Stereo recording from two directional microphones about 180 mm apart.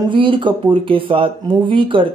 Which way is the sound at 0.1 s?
30° right (ahead or behind).